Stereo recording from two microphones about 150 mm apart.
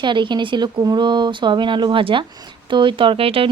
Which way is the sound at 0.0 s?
30° right (ahead or behind).